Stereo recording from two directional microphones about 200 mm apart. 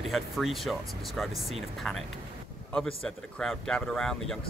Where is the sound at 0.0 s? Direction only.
Centre (ahead or behind).